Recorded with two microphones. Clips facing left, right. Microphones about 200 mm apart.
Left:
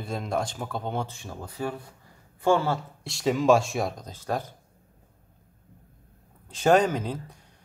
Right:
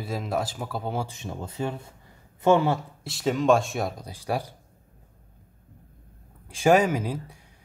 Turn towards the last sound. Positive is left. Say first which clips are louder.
# right 1 dB
turn(degrees=-10)  # may be behind; listen again after turning